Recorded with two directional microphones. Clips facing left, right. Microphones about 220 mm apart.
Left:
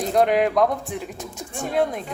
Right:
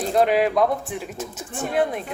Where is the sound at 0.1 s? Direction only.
5° right (ahead or behind).